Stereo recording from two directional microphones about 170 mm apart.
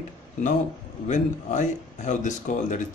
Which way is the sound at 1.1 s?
45° left (ahead or behind).